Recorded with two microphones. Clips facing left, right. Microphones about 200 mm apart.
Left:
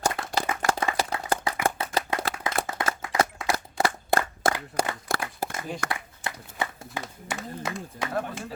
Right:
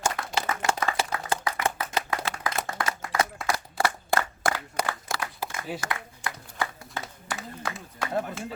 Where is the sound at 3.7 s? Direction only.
25° left (ahead or behind).